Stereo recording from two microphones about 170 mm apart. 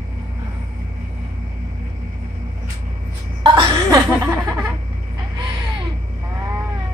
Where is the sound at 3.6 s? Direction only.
15° right (ahead or behind).